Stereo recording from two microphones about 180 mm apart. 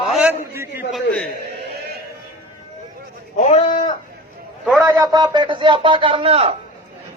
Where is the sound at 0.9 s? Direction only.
5° left (ahead or behind).